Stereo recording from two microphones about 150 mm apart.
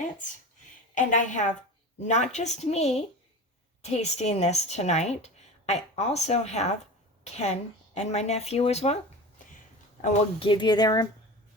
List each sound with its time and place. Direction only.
0.9 s a woman's voice: 55° left (ahead or behind)
10.4 s speech: 35° left (ahead or behind)